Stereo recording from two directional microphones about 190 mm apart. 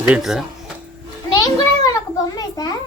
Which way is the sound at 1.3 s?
20° left (ahead or behind).